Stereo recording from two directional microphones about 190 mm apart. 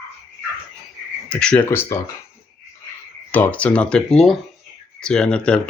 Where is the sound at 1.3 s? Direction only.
5° left (ahead or behind).